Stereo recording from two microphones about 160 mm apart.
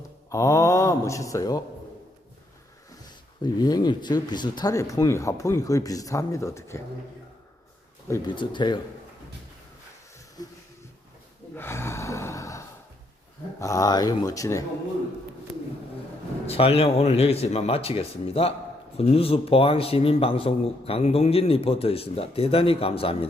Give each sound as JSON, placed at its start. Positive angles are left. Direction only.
{"t": 0.3, "sound": "speech", "side_deg": 20}
{"t": 3.4, "sound": "speech", "side_deg": 25}
{"t": 8.3, "sound": "speech", "side_deg": 30}
{"t": 11.5, "sound": "gasp", "side_deg": 15}
{"t": 13.6, "sound": "speech", "side_deg": 20}
{"t": 16.5, "sound": "a man's voice", "side_deg": 35}